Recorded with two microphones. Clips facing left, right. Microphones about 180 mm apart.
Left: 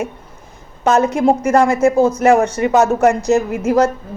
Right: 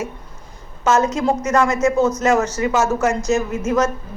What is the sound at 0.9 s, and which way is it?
A woman's voice, 30° left (ahead or behind).